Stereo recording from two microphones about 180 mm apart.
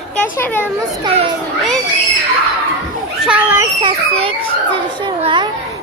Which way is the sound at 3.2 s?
5° right (ahead or behind).